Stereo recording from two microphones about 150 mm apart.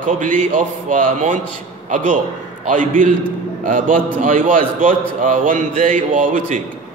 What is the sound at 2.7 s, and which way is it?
A man's voice, 60° right (ahead or behind).